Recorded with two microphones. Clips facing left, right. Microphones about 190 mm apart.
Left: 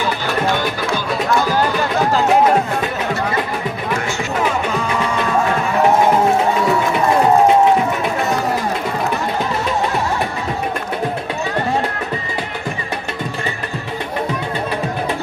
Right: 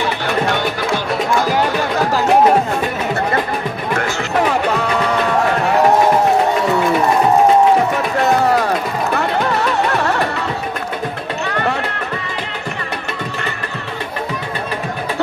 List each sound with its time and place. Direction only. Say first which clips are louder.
4.4 s music: right 4 dB; 70° right (ahead or behind)
9.1 s music: right 3 dB; 70° right (ahead or behind)
11.4 s music: even; 70° right (ahead or behind)